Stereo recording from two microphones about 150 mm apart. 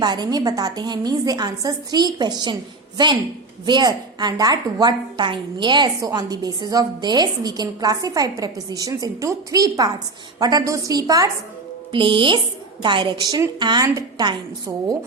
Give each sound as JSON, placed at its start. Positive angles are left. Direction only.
{"t": 0.0, "sound": "a woman's voice", "side_deg": -30}
{"t": 3.7, "sound": "a woman's voice", "side_deg": -30}
{"t": 11.9, "sound": "a woman's voice", "side_deg": -35}
{"t": 14.7, "sound": "speech", "side_deg": -15}